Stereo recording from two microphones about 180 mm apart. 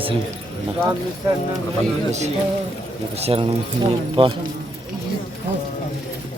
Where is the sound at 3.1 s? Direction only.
35° right (ahead or behind).